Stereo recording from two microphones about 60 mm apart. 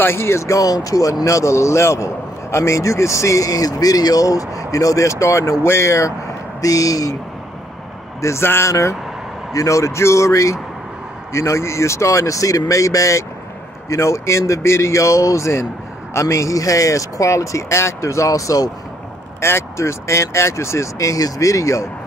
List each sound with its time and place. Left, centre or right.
0.0 s speech: left
6.6 s speech: left
8.2 s a man's voice: left
9.5 s speech: left
19.4 s speech: left